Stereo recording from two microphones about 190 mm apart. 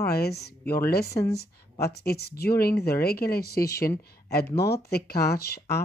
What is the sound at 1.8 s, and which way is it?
Speech, 55° left (ahead or behind).